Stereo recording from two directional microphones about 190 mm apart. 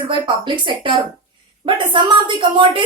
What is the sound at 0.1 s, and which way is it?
A woman's voice, 25° right (ahead or behind).